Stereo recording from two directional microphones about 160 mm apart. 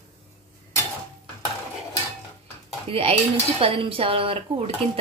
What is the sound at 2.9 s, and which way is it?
Speech, 35° right (ahead or behind).